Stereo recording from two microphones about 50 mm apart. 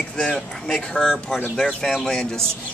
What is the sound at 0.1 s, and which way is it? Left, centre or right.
Speech, centre.